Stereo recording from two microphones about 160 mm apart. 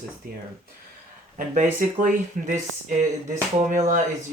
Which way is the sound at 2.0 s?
55° right (ahead or behind).